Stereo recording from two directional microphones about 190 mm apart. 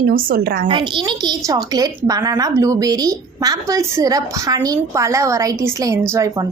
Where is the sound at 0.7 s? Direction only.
25° right (ahead or behind).